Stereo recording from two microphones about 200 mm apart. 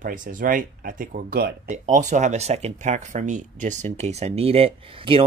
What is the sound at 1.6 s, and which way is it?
Speech, 40° right (ahead or behind).